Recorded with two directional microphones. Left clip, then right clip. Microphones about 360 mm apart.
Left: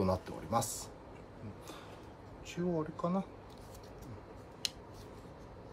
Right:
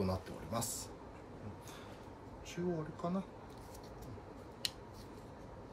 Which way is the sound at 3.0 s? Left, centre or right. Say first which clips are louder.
Left 3 dB; centre.